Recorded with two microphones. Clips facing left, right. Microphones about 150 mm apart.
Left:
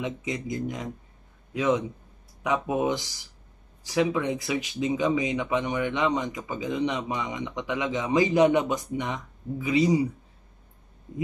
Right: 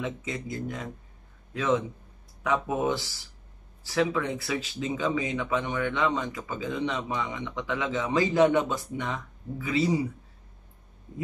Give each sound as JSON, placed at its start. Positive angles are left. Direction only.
{"t": 0.0, "sound": "speech", "side_deg": 15}